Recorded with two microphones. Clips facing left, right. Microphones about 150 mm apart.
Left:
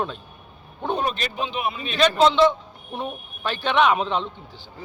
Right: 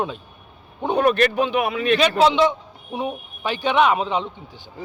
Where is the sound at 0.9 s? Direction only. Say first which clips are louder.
Right 11 dB; 65° right (ahead or behind).